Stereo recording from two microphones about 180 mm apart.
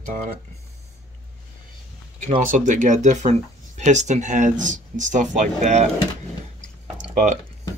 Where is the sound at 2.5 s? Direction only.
45° right (ahead or behind).